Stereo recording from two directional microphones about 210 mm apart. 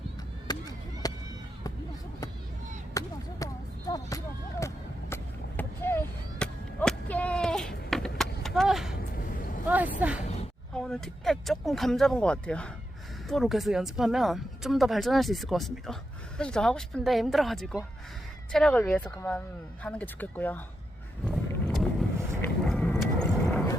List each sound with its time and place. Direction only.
0.5 s chop: 20° left (ahead or behind)
1.0 s run: 20° left (ahead or behind)
2.9 s a sound: 15° left (ahead or behind)
4.6 s vehicle: 10° left (ahead or behind)
9.6 s a sound: 10° right (ahead or behind)
13.2 s speech: centre (ahead or behind)
21.2 s boat: centre (ahead or behind)
22.4 s vehicle: 5° left (ahead or behind)